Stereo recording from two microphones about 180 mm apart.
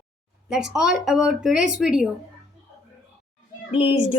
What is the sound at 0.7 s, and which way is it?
A woman's voice, centre (ahead or behind).